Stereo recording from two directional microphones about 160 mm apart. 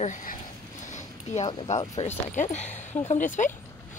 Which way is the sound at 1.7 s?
50° left (ahead or behind).